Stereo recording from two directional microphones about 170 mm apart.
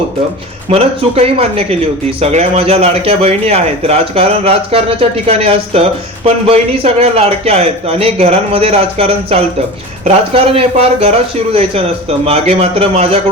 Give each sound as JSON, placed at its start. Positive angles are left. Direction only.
{"t": 0.7, "sound": "speech", "side_deg": -35}